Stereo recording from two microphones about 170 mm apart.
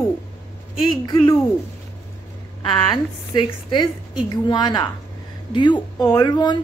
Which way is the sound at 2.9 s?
25° left (ahead or behind).